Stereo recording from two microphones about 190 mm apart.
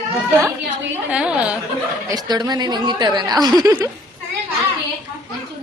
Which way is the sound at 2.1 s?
20° right (ahead or behind).